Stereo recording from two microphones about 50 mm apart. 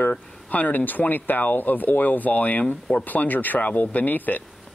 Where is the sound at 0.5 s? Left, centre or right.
Left.